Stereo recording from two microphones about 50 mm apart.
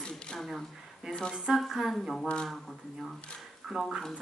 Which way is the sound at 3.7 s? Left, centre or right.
Centre.